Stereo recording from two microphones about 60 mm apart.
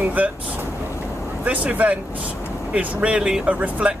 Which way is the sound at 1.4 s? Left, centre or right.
Right.